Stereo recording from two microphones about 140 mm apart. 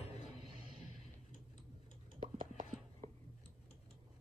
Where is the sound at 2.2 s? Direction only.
70° right (ahead or behind).